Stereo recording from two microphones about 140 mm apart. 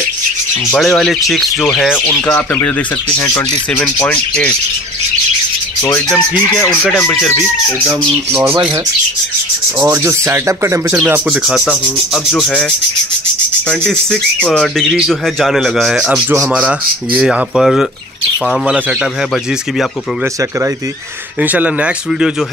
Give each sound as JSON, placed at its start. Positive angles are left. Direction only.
{"t": 0.7, "sound": "a man's voice", "side_deg": 0}
{"t": 3.7, "sound": "speech", "side_deg": 10}
{"t": 5.9, "sound": "speech", "side_deg": 10}
{"t": 7.2, "sound": "a man's voice", "side_deg": 0}
{"t": 8.3, "sound": "speech", "side_deg": -15}
{"t": 9.8, "sound": "speech", "side_deg": -15}
{"t": 11.2, "sound": "a man's voice", "side_deg": 0}
{"t": 13.7, "sound": "a man's voice", "side_deg": 5}
{"t": 21.4, "sound": "speech", "side_deg": -10}